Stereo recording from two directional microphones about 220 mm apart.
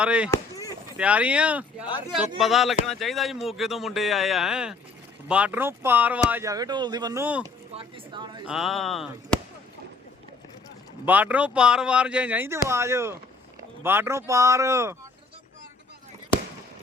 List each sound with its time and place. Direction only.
0.0 s speech: 5° right (ahead or behind)
0.3 s chop: 15° left (ahead or behind)
0.9 s speech: 5° right (ahead or behind)
7.8 s speech: 20° right (ahead or behind)
8.4 s speech: centre (ahead or behind)
11.0 s speech: 5° right (ahead or behind)